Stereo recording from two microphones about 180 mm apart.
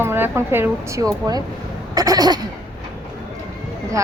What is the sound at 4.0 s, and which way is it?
Speech, 15° right (ahead or behind).